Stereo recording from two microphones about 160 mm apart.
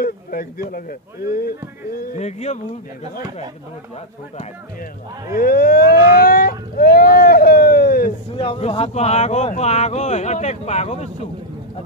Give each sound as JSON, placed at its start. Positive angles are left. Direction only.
{"t": 0.0, "sound": "speech", "side_deg": 65}
{"t": 2.1, "sound": "speech", "side_deg": 45}
{"t": 5.3, "sound": "a sound", "side_deg": 65}
{"t": 8.4, "sound": "speech", "side_deg": 40}